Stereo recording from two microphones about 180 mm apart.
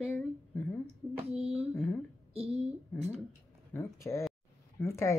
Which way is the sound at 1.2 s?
35° right (ahead or behind).